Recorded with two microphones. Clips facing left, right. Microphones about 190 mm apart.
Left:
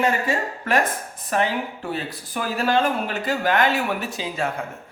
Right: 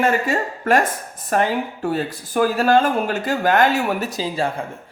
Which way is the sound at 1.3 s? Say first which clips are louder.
Right 3 dB; 45° right (ahead or behind).